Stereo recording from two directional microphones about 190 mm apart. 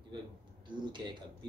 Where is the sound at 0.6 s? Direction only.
25° right (ahead or behind).